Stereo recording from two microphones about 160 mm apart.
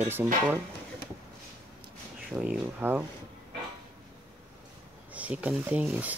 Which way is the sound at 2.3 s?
10° right (ahead or behind).